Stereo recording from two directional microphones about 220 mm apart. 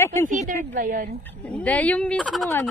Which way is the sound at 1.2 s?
5° left (ahead or behind).